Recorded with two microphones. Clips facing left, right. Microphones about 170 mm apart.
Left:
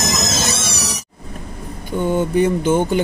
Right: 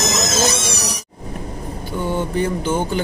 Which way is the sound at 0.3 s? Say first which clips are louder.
Right 3 dB; 15° right (ahead or behind).